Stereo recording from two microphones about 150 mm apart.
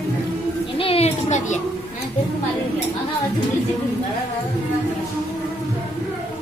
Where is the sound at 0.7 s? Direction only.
40° left (ahead or behind).